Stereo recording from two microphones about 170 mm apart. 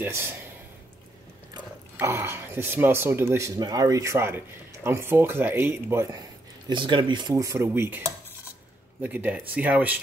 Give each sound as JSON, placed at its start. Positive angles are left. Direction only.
{"t": 0.0, "sound": "speech", "side_deg": -15}
{"t": 2.0, "sound": "speech", "side_deg": -15}
{"t": 6.7, "sound": "speech", "side_deg": -30}
{"t": 9.0, "sound": "speech", "side_deg": -10}